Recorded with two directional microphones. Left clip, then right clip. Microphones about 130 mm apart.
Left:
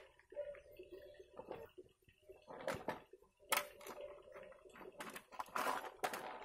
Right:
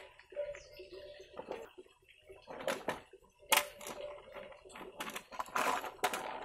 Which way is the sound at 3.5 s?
10° right (ahead or behind).